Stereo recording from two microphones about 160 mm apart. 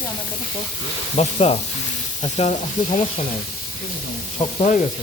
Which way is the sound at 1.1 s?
40° left (ahead or behind).